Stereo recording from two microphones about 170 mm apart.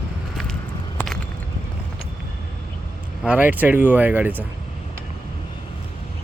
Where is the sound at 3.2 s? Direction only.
5° right (ahead or behind).